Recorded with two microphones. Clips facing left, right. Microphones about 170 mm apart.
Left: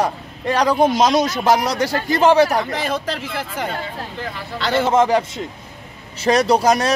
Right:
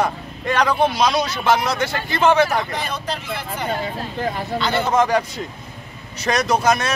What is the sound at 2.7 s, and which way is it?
Speech, 90° left.